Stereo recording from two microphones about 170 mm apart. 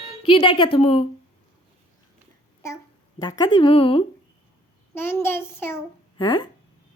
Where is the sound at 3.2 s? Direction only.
25° left (ahead or behind).